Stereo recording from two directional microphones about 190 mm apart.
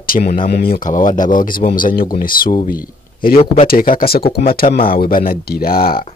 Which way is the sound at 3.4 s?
30° left (ahead or behind).